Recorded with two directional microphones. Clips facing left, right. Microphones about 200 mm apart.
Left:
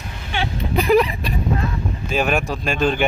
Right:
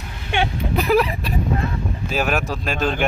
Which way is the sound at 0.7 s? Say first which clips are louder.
Left 2 dB; 5° right (ahead or behind).